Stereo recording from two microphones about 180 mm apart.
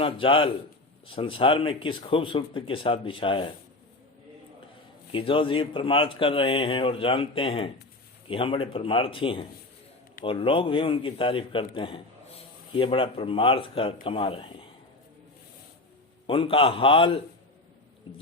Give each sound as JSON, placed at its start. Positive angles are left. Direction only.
{"t": 0.0, "sound": "a man's voice", "side_deg": 30}
{"t": 5.1, "sound": "a man's voice", "side_deg": 30}
{"t": 16.2, "sound": "a man's voice", "side_deg": 30}